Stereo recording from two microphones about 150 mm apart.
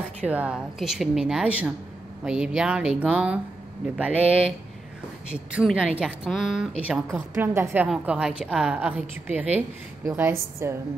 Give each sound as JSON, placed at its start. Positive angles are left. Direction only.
{"t": 0.2, "sound": "a woman's voice", "side_deg": -10}